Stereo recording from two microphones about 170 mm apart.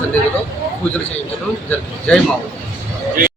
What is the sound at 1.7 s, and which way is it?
Speech, 5° left (ahead or behind).